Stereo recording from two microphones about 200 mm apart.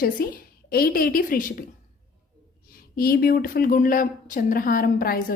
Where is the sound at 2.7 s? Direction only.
50° left (ahead or behind).